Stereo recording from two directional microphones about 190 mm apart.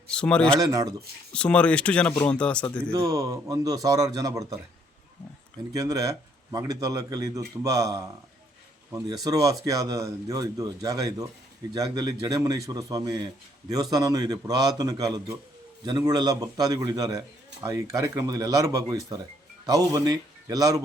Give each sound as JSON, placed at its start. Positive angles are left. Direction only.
{"t": 0.1, "sound": "speech", "side_deg": 5}
{"t": 0.5, "sound": "a man's voice", "side_deg": -20}
{"t": 1.3, "sound": "speech", "side_deg": 5}
{"t": 2.9, "sound": "a man's voice", "side_deg": -15}
{"t": 5.7, "sound": "a man's voice", "side_deg": -15}